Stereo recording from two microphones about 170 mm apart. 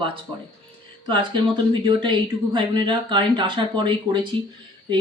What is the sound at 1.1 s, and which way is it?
Speech, 30° right (ahead or behind).